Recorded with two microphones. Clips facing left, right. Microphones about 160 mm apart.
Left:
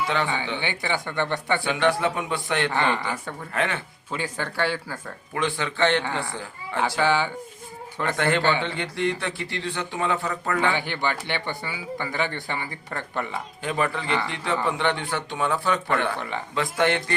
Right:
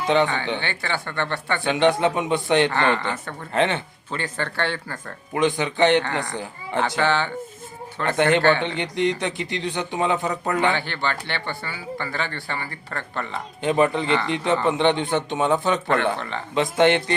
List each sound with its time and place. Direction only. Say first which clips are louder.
0.0 s speech: right 6 dB; 20° right (ahead or behind)
0.6 s speech: even; 15° left (ahead or behind)
1.6 s speech: right 6 dB; 20° right (ahead or behind)
2.7 s speech: right 2 dB; 15° left (ahead or behind)
3.5 s speech: right 6 dB; 25° right (ahead or behind)
4.1 s speech: right 1 dB; 10° left (ahead or behind)
5.3 s speech: right 5 dB; 20° right (ahead or behind)
6.7 s speech: right 1 dB; 5° left (ahead or behind)
8.0 s speech: right 4 dB; 20° right (ahead or behind)
8.4 s speech: right 4 dB; 15° left (ahead or behind)
8.6 s speech: right 3 dB; 20° right (ahead or behind)
10.8 s speech: even; 15° left (ahead or behind)
13.6 s speech: right 7 dB; 20° right (ahead or behind)